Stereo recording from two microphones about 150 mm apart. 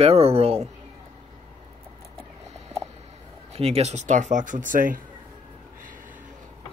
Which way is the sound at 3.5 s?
40° right (ahead or behind).